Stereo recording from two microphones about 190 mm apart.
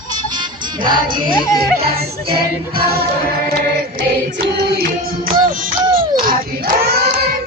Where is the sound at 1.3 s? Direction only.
20° left (ahead or behind).